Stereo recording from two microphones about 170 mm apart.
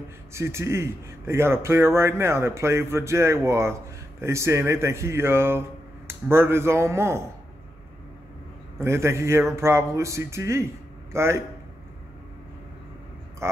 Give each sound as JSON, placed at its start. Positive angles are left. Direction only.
{"t": 0.3, "sound": "speech", "side_deg": -15}
{"t": 8.7, "sound": "speech", "side_deg": -15}
{"t": 13.4, "sound": "speech", "side_deg": -15}